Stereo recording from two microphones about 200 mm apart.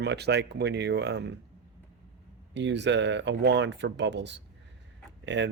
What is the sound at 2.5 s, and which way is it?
A man's voice, 60° right (ahead or behind).